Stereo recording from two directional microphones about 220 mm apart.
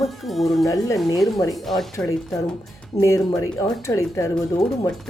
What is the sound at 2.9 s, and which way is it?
Speech, 15° left (ahead or behind).